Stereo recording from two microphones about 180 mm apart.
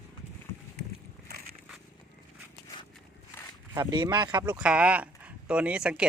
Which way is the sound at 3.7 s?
25° right (ahead or behind).